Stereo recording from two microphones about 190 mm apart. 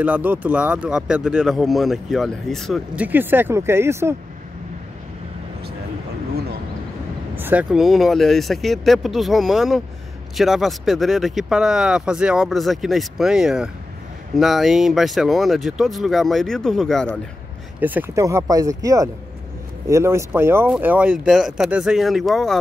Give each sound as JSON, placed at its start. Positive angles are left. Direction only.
{"t": 0.0, "sound": "speech", "side_deg": -10}
{"t": 3.1, "sound": "speech", "side_deg": -10}
{"t": 7.3, "sound": "speech", "side_deg": -10}
{"t": 17.7, "sound": "speech", "side_deg": -10}